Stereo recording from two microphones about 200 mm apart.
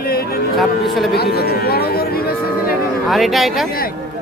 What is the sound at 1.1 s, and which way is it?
Speech, 55° left (ahead or behind).